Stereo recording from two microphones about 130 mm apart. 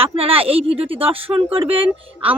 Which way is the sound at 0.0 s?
45° right (ahead or behind).